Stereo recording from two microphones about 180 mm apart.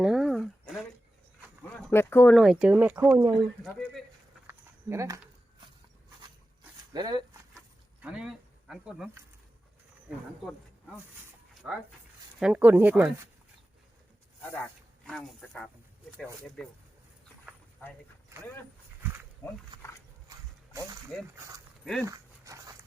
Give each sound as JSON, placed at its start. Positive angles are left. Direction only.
{"t": 0.0, "sound": "a sound", "side_deg": 0}
{"t": 1.7, "sound": "speech", "side_deg": 10}
{"t": 2.3, "sound": "speech", "side_deg": 0}
{"t": 3.7, "sound": "a sound", "side_deg": 5}
{"t": 4.4, "sound": "a sound", "side_deg": -15}
{"t": 6.9, "sound": "speech", "side_deg": -20}
{"t": 8.0, "sound": "speech", "side_deg": -5}
{"t": 12.4, "sound": "speech", "side_deg": -5}
{"t": 14.6, "sound": "speech", "side_deg": 5}
{"t": 17.8, "sound": "speech", "side_deg": 10}
{"t": 19.4, "sound": "speech", "side_deg": 15}
{"t": 20.7, "sound": "speech", "side_deg": -20}
{"t": 22.0, "sound": "dog", "side_deg": -20}